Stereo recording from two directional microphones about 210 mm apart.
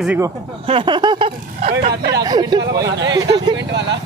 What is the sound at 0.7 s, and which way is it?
Speech, 25° right (ahead or behind).